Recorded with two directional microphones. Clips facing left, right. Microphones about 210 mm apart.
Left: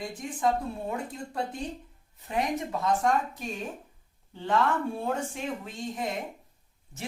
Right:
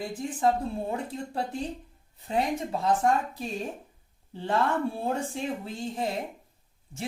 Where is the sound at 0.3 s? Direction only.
30° right (ahead or behind).